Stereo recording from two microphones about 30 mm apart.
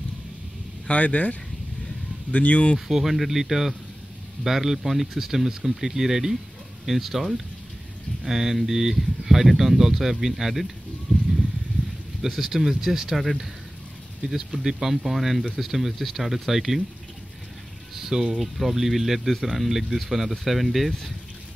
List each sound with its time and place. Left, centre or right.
0.8 s speech: left
2.3 s speech: left
2.9 s speech: centre
12.2 s speech: centre
14.2 s speech: centre
15.0 s speech: centre
17.9 s boiling: centre
18.3 s speech: centre